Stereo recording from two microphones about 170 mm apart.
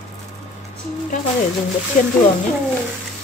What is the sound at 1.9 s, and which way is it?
Speech, 50° left (ahead or behind).